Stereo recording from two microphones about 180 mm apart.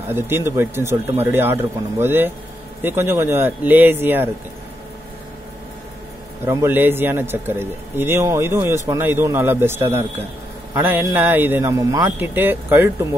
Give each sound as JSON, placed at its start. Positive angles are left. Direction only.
{"t": 0.5, "sound": "a man's voice", "side_deg": -15}
{"t": 6.4, "sound": "a man's voice", "side_deg": -15}